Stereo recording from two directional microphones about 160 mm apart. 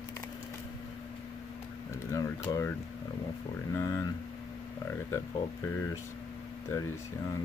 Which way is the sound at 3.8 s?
15° left (ahead or behind).